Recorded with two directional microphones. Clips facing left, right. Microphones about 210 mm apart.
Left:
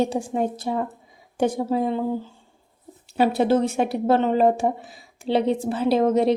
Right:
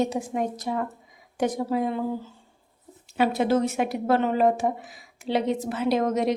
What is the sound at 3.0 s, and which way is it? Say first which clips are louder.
A woman's voice: left 3 dB; 35° left (ahead or behind).